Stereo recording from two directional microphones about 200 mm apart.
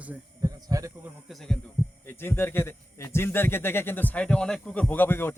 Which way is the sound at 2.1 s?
10° left (ahead or behind).